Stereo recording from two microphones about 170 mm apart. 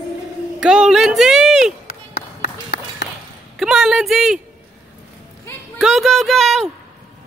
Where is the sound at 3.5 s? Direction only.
Centre (ahead or behind).